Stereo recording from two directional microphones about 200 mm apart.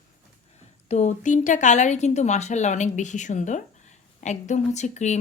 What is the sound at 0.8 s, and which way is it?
A woman's voice, 35° left (ahead or behind).